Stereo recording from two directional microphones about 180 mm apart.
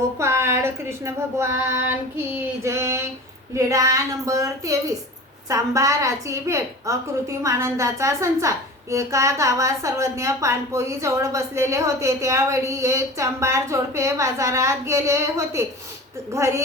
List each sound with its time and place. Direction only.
0.2 s a woman's voice: 15° right (ahead or behind)